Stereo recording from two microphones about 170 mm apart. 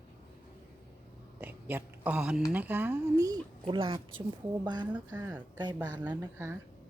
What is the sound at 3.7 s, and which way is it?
Speech, 30° right (ahead or behind).